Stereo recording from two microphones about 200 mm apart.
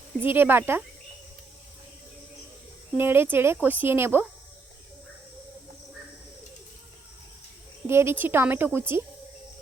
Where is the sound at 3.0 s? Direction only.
10° right (ahead or behind).